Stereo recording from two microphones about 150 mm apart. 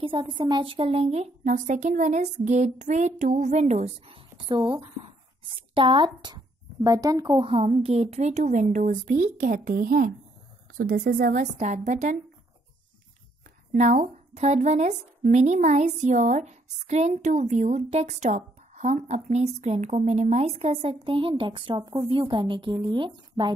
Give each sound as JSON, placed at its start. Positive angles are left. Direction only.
{"t": 0.0, "sound": "speech", "side_deg": -35}
{"t": 10.8, "sound": "a woman's voice", "side_deg": -80}
{"t": 11.5, "sound": "speech", "side_deg": -50}
{"t": 13.7, "sound": "speech", "side_deg": -55}